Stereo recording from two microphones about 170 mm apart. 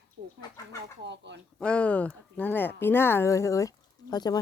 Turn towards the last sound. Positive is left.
turn(degrees=25)  # may be behind; listen again after turning